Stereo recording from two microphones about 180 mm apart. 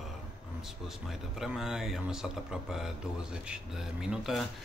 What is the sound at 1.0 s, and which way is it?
Speech, centre (ahead or behind).